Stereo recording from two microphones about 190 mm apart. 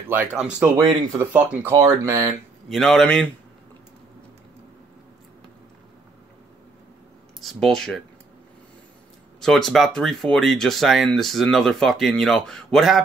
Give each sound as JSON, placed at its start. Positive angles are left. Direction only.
{"t": 0.1, "sound": "speech", "side_deg": -5}
{"t": 0.7, "sound": "speech", "side_deg": -15}
{"t": 2.7, "sound": "speech", "side_deg": 0}
{"t": 7.3, "sound": "speech", "side_deg": 0}
{"t": 9.4, "sound": "speech", "side_deg": 0}